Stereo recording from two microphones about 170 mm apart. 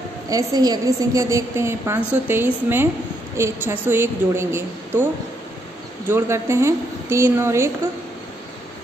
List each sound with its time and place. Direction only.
0.3 s a woman's voice: 20° right (ahead or behind)
6.0 s a woman's voice: 15° right (ahead or behind)